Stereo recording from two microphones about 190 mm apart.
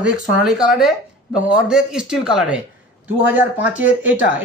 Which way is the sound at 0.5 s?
5° right (ahead or behind).